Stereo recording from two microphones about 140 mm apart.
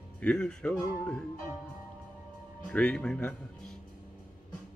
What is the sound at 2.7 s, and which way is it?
Speech, 5° left (ahead or behind).